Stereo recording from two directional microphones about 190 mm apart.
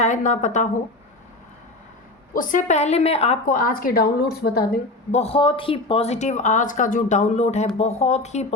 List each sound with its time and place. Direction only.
0.0 s speech: 40° left (ahead or behind)
2.3 s a woman's voice: 45° left (ahead or behind)
5.1 s speech: 30° left (ahead or behind)